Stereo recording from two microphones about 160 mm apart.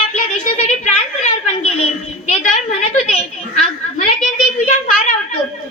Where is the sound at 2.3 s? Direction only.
50° left (ahead or behind).